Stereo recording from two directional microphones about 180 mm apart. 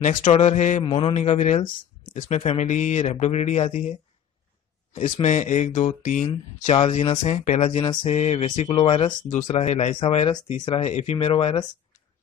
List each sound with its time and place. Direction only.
0.0 s speech: 40° left (ahead or behind)
4.9 s speech: 40° left (ahead or behind)
7.8 s mantra: 25° left (ahead or behind)
8.1 s speech: 40° left (ahead or behind)
10.8 s speech: 40° left (ahead or behind)